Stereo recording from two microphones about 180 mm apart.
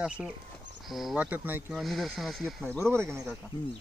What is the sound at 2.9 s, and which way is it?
Speech, 15° right (ahead or behind).